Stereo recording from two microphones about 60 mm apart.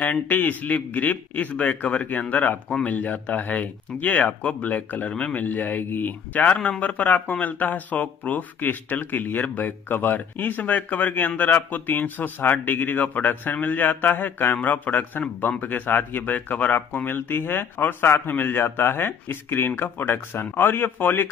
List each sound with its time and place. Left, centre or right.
0.0 s a man's voice: left